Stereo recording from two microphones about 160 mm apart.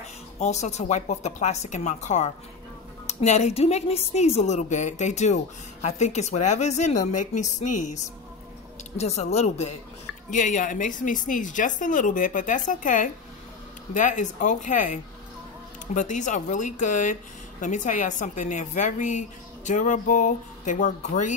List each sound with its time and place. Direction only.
0.4 s speech: 45° left (ahead or behind)
10.3 s a woman's voice: 55° left (ahead or behind)